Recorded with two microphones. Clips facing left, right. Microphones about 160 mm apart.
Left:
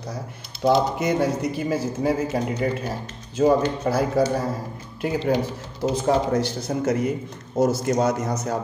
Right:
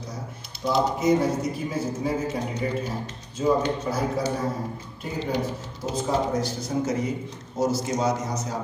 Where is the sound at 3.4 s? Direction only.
80° left.